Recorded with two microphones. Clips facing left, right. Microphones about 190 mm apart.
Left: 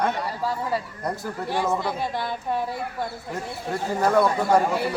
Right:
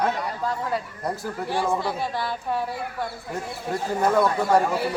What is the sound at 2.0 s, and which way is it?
Speech, 15° left (ahead or behind).